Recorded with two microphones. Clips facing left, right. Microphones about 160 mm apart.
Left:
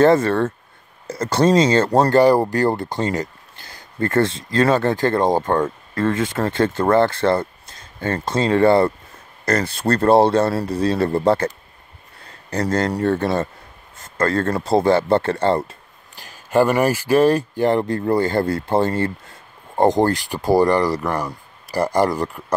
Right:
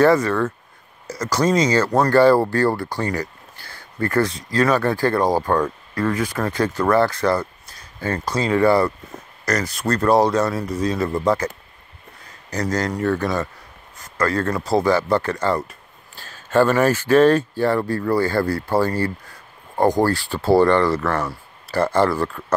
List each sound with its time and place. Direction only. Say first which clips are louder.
0.0 s speech: left 2 dB; 25° left (ahead or behind)
2.1 s speech: right 2 dB; 20° left (ahead or behind)
16.2 s speech: even; 15° left (ahead or behind)